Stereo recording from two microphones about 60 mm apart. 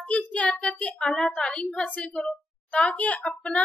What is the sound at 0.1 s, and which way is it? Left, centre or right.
Speech, left.